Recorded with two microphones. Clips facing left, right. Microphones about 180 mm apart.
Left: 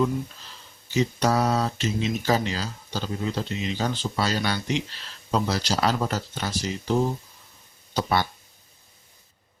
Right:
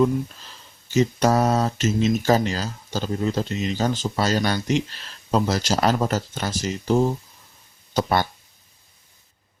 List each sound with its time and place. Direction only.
0.9 s speech: 45° right (ahead or behind)
7.9 s speech: 45° right (ahead or behind)